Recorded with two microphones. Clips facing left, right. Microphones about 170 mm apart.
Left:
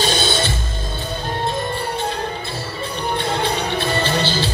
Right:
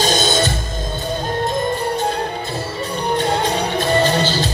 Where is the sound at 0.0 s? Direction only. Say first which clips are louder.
Right 3 dB; 45° right (ahead or behind).